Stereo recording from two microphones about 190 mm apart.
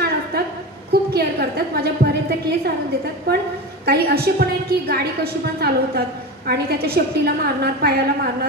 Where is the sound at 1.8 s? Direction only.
55° right (ahead or behind).